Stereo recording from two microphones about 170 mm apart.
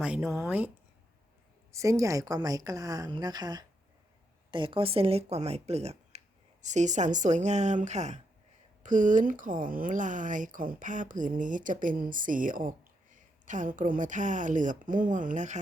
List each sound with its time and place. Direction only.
0.0 s speech: 5° right (ahead or behind)
1.7 s a woman's voice: 20° right (ahead or behind); by 15.5 s 50° right (ahead or behind)